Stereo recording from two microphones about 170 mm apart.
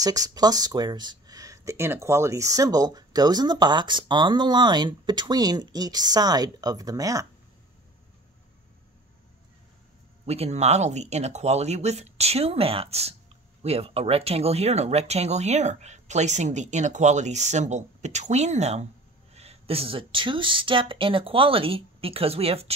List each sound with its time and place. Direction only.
0.0 s speech: 20° right (ahead or behind)
10.2 s speech: 35° right (ahead or behind)